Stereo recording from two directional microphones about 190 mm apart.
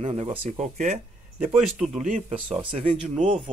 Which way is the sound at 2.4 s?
5° right (ahead or behind).